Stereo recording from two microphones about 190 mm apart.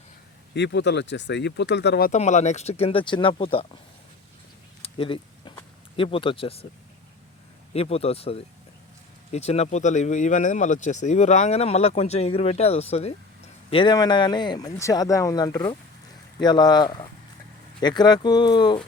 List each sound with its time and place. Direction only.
0.5 s speech: 65° left (ahead or behind)
2.1 s speech: 35° left (ahead or behind)
4.8 s a sound: 30° left (ahead or behind)
7.7 s speech: 30° left (ahead or behind)